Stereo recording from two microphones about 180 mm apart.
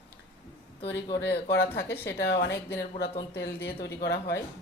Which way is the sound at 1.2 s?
65° left (ahead or behind).